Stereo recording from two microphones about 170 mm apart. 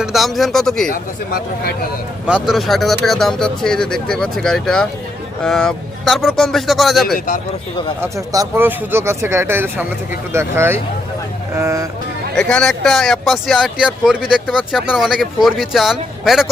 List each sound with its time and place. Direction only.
0.0 s speech: centre (ahead or behind)
0.9 s speech: 60° left (ahead or behind)
2.2 s speech: 5° right (ahead or behind)
8.0 s speech: 20° right (ahead or behind)
12.4 s speech: 5° left (ahead or behind)